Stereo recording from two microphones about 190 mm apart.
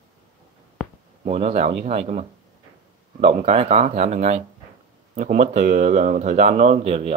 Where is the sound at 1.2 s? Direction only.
35° right (ahead or behind).